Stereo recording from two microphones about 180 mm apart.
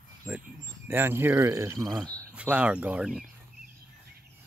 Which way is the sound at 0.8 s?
15° right (ahead or behind).